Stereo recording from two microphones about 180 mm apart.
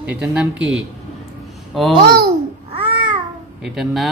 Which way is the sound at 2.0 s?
60° right (ahead or behind).